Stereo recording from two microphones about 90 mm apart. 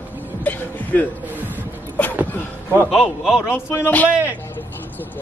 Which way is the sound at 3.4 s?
30° left (ahead or behind).